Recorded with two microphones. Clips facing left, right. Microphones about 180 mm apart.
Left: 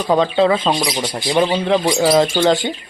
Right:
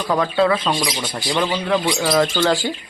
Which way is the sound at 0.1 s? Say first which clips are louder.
Left 3 dB; 20° left (ahead or behind).